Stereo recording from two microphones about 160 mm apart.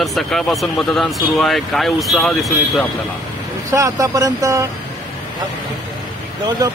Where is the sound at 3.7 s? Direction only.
20° right (ahead or behind).